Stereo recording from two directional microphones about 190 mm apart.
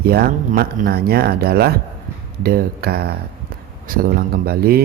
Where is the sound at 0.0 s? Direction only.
55° right (ahead or behind).